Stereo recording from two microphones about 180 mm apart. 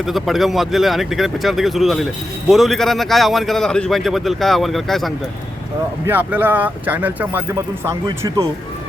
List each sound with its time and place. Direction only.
0.0 s a man's voice: centre (ahead or behind)
6.1 s speech: 10° right (ahead or behind)